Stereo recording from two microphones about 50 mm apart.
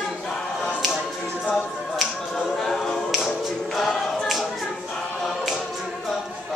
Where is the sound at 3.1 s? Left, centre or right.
Centre.